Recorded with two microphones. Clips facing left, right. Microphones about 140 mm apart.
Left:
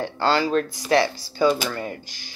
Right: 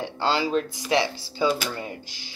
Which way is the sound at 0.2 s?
15° right (ahead or behind).